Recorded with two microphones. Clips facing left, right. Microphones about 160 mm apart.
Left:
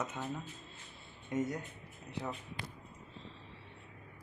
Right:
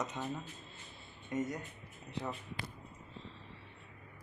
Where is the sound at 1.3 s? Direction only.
10° left (ahead or behind).